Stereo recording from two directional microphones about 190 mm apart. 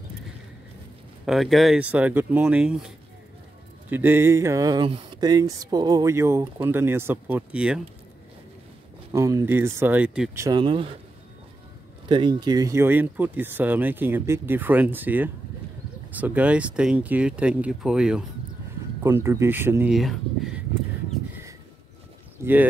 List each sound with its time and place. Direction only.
1.2 s speech: centre (ahead or behind)
3.9 s speech: 10° right (ahead or behind)
9.1 s speech: 15° right (ahead or behind)
10.3 s speech: 20° right (ahead or behind)
12.1 s speech: 25° right (ahead or behind); by 18.2 s 5° right (ahead or behind)
19.0 s speech: 15° right (ahead or behind)
22.4 s speech: 10° right (ahead or behind)